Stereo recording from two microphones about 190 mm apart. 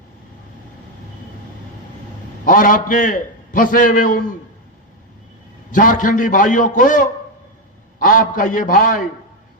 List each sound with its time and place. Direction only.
2.4 s a man's voice: 45° left (ahead or behind)
5.7 s a man's voice: 45° left (ahead or behind)